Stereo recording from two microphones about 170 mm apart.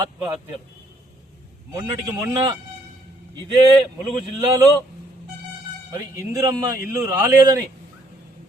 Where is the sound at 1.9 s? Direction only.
25° right (ahead or behind).